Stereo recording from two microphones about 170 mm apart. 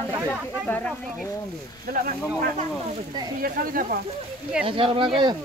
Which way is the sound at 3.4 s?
55° right (ahead or behind).